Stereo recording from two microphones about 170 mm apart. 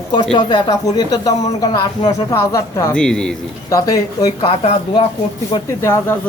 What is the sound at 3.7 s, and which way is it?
Speech, 20° left (ahead or behind).